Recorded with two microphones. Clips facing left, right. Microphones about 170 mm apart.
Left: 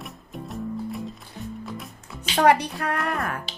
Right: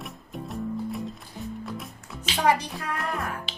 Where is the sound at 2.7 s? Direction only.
65° left (ahead or behind).